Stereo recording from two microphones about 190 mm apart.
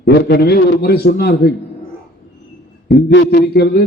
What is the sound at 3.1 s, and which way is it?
Speech, 55° left (ahead or behind).